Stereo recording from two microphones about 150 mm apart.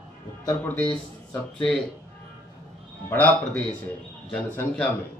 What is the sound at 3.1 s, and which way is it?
A man's voice, 10° left (ahead or behind).